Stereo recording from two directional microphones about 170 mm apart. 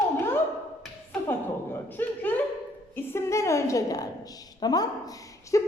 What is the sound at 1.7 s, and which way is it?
A woman's voice, 10° left (ahead or behind).